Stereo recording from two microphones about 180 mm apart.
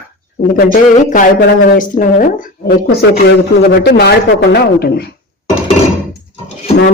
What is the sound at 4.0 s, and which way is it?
Speech, 65° left (ahead or behind).